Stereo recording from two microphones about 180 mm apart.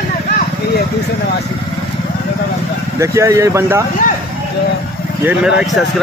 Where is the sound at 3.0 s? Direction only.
15° right (ahead or behind).